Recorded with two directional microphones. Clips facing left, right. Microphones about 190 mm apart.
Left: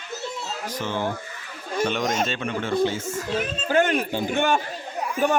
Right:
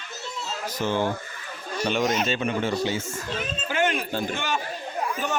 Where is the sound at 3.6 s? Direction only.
45° left (ahead or behind).